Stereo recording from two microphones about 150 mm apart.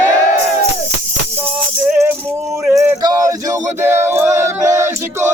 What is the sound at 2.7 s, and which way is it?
Speech, 20° right (ahead or behind).